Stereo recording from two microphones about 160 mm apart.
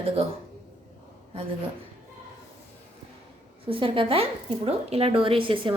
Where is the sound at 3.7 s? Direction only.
35° right (ahead or behind).